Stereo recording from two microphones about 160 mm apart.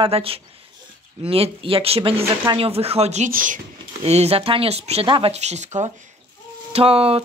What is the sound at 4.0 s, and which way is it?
Speech, 40° right (ahead or behind).